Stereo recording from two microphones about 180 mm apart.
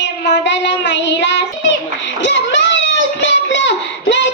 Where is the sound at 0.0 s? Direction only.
75° left (ahead or behind).